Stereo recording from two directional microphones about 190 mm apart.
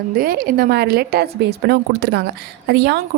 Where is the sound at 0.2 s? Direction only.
50° right (ahead or behind).